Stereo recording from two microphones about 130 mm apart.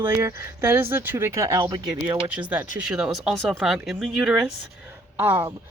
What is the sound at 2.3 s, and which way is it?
Speech, 10° right (ahead or behind).